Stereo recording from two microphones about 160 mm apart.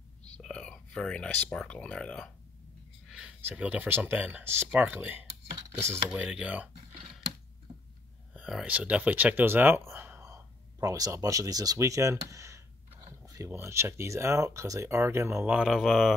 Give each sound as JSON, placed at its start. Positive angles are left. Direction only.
{"t": 0.2, "sound": "speech", "side_deg": 5}
{"t": 6.0, "sound": "speech", "side_deg": -5}
{"t": 8.3, "sound": "speech", "side_deg": -5}
{"t": 15.5, "sound": "speech", "side_deg": 0}